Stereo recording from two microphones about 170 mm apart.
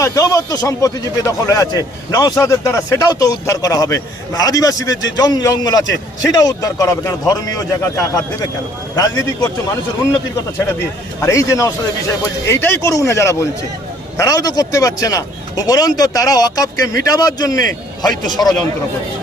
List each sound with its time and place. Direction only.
0.0 s speech: 20° left (ahead or behind)
11.2 s speech: 15° left (ahead or behind)